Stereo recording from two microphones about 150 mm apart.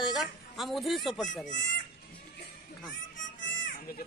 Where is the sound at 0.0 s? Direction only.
Centre (ahead or behind).